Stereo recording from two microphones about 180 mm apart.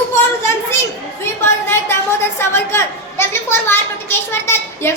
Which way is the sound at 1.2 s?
15° left (ahead or behind).